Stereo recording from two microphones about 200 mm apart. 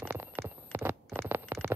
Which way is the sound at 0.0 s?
10° right (ahead or behind).